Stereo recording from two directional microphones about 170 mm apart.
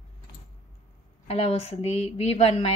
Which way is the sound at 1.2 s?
35° left (ahead or behind).